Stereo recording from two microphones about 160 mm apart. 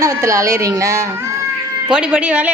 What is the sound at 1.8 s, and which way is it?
Speech, 5° right (ahead or behind).